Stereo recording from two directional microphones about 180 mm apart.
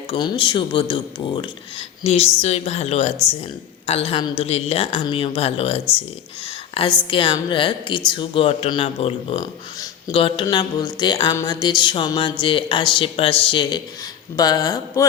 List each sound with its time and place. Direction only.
0.1 s a woman's voice: 25° left (ahead or behind)